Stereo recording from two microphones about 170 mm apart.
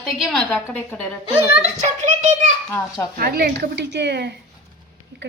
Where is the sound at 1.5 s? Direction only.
40° right (ahead or behind).